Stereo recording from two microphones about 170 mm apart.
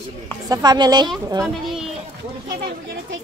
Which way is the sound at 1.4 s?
Centre (ahead or behind).